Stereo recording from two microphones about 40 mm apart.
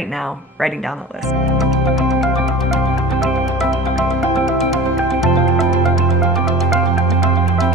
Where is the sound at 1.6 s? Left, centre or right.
Centre.